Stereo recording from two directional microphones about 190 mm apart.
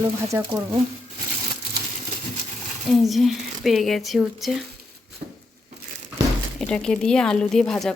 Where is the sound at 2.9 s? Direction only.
Centre (ahead or behind).